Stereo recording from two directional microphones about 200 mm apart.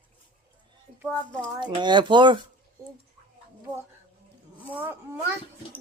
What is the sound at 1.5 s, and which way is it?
Speech, 20° right (ahead or behind).